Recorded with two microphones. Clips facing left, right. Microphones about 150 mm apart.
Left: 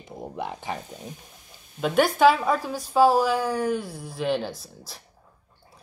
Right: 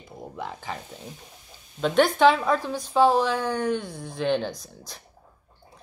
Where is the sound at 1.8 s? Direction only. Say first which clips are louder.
Even; 5° left (ahead or behind).